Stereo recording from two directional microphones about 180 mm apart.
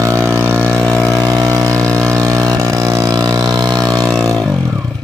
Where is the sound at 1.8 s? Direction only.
5° left (ahead or behind).